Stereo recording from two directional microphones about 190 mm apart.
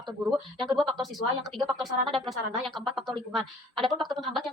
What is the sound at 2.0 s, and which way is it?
Speech, 25° right (ahead or behind).